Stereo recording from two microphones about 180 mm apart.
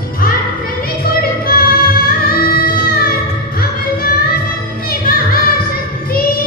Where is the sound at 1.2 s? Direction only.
55° left (ahead or behind).